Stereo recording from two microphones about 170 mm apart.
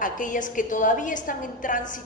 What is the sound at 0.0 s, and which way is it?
A woman's voice, 50° left (ahead or behind).